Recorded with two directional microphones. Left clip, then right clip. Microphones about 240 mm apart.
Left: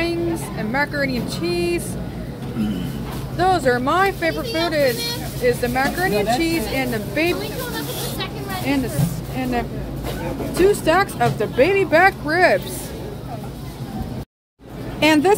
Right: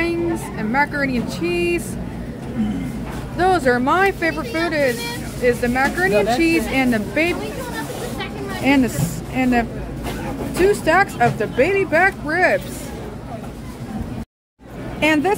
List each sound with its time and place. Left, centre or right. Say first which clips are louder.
0.0 s speech: right 1 dB; centre
3.3 s speech: right 1 dB; centre
8.6 s speech: right 6 dB; right
10.6 s speech: right 1 dB; centre
15.0 s a sound: left 2 dB; centre